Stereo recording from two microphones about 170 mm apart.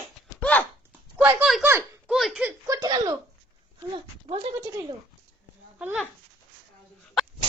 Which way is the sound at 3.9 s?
35° right (ahead or behind).